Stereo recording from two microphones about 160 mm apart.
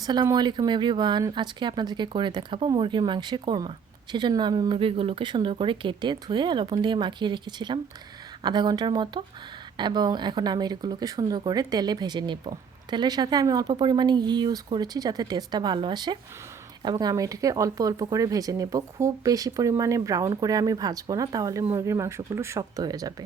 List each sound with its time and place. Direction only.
0.0 s speech: 25° right (ahead or behind)